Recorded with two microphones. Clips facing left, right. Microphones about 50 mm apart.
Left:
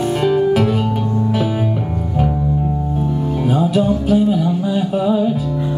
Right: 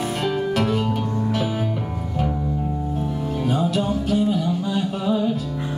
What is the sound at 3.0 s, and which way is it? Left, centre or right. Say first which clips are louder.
Music: left 6 dB; centre.